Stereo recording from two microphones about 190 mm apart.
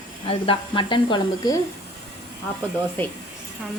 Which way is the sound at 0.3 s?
25° left (ahead or behind).